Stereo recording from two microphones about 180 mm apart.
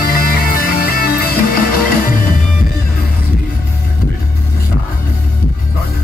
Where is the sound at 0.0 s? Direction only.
55° left (ahead or behind).